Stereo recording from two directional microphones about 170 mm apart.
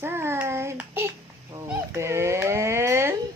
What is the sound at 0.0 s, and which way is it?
Child singing, 15° right (ahead or behind).